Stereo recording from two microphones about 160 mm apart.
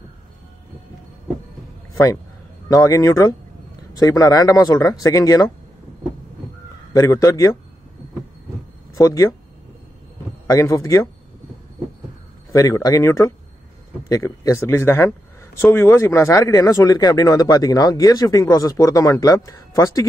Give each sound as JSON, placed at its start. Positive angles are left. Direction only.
{"t": 2.7, "sound": "speech", "side_deg": 20}
{"t": 6.9, "sound": "speech", "side_deg": 20}
{"t": 8.9, "sound": "speech", "side_deg": 20}
{"t": 10.4, "sound": "speech", "side_deg": 20}
{"t": 12.5, "sound": "a man's voice", "side_deg": 20}